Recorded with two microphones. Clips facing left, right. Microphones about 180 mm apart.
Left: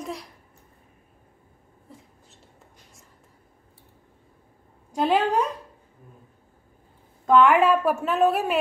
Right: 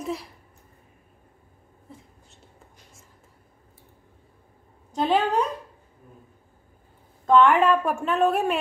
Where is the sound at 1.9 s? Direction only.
Centre (ahead or behind).